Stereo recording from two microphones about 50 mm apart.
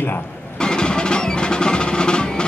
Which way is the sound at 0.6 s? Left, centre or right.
Centre.